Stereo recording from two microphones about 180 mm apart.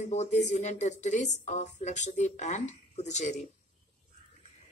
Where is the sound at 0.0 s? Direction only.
40° left (ahead or behind).